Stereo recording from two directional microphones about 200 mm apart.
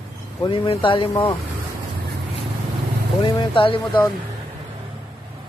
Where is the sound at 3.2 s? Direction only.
25° left (ahead or behind).